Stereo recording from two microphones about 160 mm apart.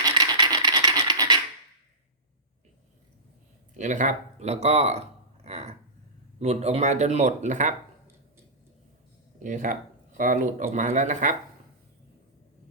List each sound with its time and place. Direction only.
0.0 s scratch: 25° right (ahead or behind)
3.8 s speech: 50° right (ahead or behind)
9.4 s speech: 50° right (ahead or behind)